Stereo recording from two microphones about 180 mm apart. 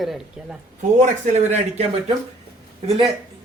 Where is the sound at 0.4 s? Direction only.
5° right (ahead or behind).